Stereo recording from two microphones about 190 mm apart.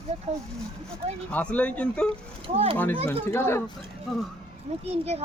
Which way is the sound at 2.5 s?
30° right (ahead or behind).